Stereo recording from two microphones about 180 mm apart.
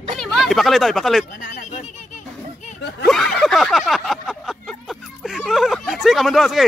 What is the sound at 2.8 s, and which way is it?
Snicker, 65° left (ahead or behind).